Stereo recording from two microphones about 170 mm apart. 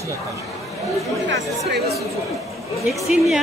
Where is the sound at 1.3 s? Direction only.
70° right (ahead or behind).